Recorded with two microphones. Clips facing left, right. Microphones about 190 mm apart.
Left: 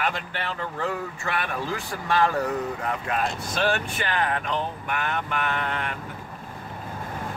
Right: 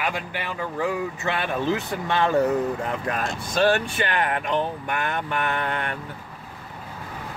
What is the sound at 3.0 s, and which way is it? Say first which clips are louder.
Speech: even; 40° right (ahead or behind).